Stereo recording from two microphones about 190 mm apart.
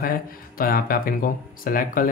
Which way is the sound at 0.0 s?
50° left (ahead or behind).